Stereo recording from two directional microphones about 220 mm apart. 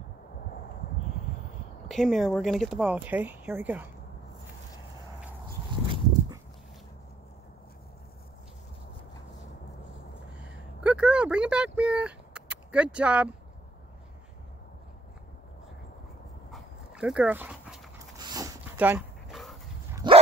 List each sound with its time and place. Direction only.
1.9 s speech: centre (ahead or behind)
10.3 s a sound: 5° right (ahead or behind)
16.5 s dog: 5° right (ahead or behind)
18.1 s dog: 15° right (ahead or behind); by 19.5 s centre (ahead or behind)
20.0 s dog: 20° right (ahead or behind)